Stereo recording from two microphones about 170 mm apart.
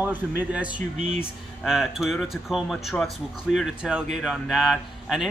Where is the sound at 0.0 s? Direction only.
10° right (ahead or behind).